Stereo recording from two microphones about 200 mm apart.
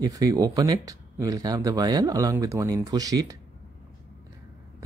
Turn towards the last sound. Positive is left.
turn(degrees=-20)  # may be behind; listen again after turning